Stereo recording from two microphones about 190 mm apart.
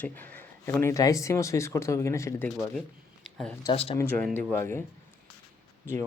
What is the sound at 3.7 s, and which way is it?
Speech, 30° left (ahead or behind).